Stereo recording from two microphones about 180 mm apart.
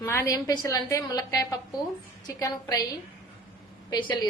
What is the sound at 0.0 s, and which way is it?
A woman's voice, 15° left (ahead or behind).